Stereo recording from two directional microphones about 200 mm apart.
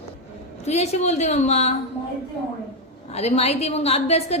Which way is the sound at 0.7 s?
35° left (ahead or behind).